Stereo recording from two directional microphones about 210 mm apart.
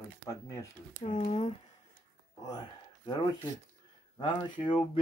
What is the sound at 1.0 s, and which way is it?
Speech, 35° left (ahead or behind).